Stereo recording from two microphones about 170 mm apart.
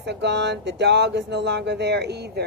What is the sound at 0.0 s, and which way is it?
A woman's voice, 85° right.